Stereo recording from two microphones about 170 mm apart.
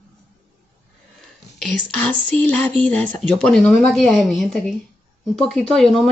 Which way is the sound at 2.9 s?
5° left (ahead or behind).